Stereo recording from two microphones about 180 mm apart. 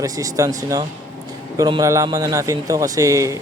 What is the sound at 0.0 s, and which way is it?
Speech, 20° right (ahead or behind).